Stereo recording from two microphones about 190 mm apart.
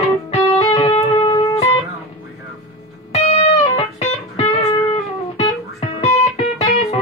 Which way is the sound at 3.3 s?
35° left (ahead or behind).